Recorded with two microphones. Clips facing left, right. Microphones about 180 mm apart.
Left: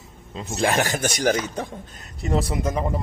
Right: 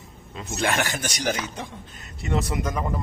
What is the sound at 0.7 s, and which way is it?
A man's voice, 40° left (ahead or behind).